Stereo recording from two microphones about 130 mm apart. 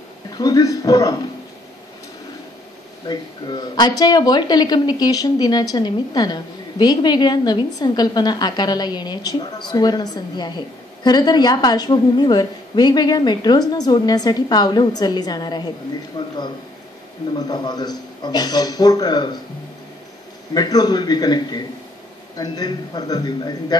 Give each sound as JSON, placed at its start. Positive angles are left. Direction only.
{"t": 0.3, "sound": "speech", "side_deg": 30}
{"t": 3.1, "sound": "speech", "side_deg": 35}
{"t": 17.5, "sound": "speech", "side_deg": 30}
{"t": 20.5, "sound": "speech", "side_deg": 30}